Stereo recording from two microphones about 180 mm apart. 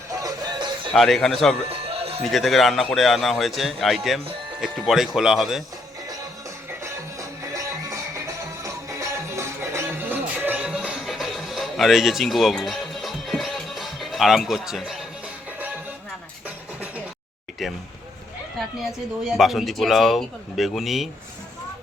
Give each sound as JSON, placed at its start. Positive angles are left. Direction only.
{"t": 0.1, "sound": "music", "side_deg": -20}
{"t": 0.9, "sound": "a man's voice", "side_deg": 0}
{"t": 1.7, "sound": "music", "side_deg": -30}
{"t": 2.3, "sound": "a man's voice", "side_deg": 0}
{"t": 6.8, "sound": "music", "side_deg": -15}
{"t": 17.6, "sound": "speech", "side_deg": 0}
{"t": 19.4, "sound": "a man's voice", "side_deg": 0}